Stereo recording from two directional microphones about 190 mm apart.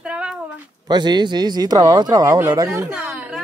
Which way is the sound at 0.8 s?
20° right (ahead or behind).